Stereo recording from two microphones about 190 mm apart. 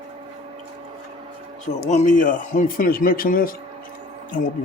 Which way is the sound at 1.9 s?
40° left (ahead or behind).